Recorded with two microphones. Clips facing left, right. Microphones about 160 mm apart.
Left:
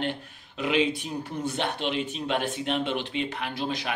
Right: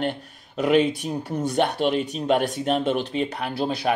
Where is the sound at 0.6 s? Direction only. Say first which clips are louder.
Right 6 dB; 45° right (ahead or behind).